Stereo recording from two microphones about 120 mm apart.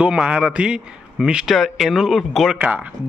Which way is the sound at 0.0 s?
10° right (ahead or behind).